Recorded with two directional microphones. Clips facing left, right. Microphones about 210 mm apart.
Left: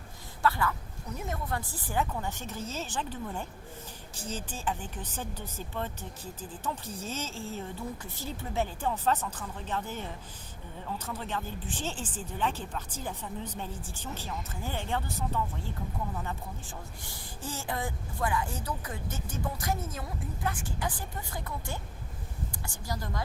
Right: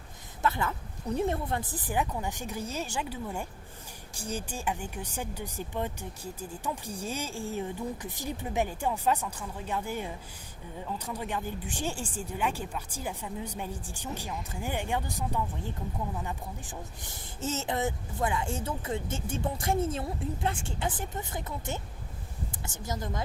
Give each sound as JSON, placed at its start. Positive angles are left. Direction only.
{"t": 0.4, "sound": "a woman's voice", "side_deg": -20}